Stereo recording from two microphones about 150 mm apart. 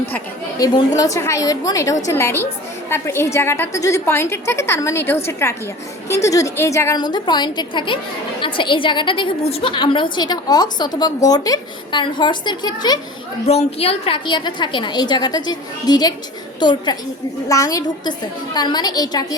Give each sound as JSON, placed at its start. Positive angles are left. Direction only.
{"t": 0.6, "sound": "a woman's voice", "side_deg": 25}
{"t": 13.5, "sound": "a woman's voice", "side_deg": 45}